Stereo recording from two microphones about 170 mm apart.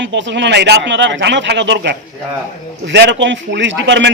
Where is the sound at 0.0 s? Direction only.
90° right.